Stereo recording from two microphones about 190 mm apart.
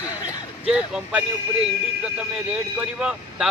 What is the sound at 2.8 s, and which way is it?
Speech, 5° right (ahead or behind).